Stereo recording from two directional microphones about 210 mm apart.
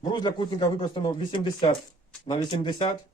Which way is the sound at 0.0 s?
20° left (ahead or behind).